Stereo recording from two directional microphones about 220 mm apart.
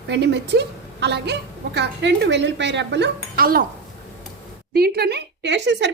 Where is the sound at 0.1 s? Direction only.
50° right (ahead or behind).